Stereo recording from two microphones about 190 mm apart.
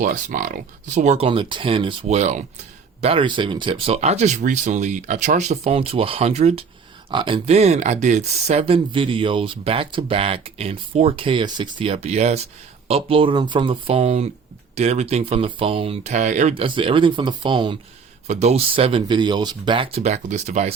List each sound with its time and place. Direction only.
0.0 s speech: 45° right (ahead or behind); by 17.7 s 25° right (ahead or behind)
18.3 s speech: 35° right (ahead or behind)